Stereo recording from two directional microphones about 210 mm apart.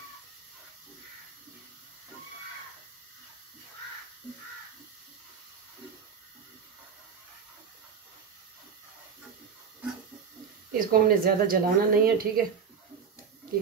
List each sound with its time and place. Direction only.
10.7 s a woman's voice: 45° right (ahead or behind)